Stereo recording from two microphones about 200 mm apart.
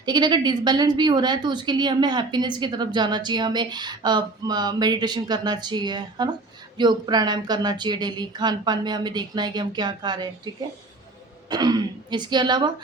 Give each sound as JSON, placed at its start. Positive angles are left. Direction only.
{"t": 0.0, "sound": "a woman's voice", "side_deg": -20}